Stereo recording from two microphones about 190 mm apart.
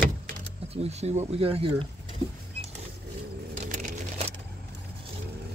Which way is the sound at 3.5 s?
40° right (ahead or behind).